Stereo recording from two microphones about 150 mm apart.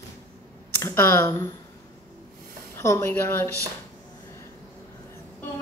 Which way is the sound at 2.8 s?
20° left (ahead or behind).